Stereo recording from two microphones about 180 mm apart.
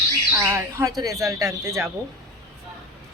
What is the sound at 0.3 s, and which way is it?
Speech, 15° right (ahead or behind).